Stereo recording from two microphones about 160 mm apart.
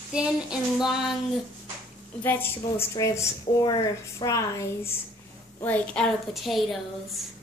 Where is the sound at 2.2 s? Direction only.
10° left (ahead or behind).